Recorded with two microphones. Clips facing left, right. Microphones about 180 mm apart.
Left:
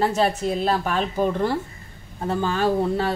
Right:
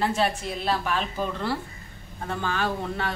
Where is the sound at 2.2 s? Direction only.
35° left (ahead or behind).